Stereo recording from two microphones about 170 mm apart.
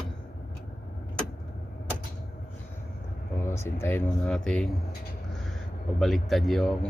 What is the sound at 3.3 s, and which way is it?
Speech, 15° left (ahead or behind).